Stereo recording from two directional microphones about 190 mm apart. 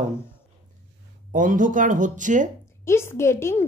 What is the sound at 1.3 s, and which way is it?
Speech, 45° right (ahead or behind).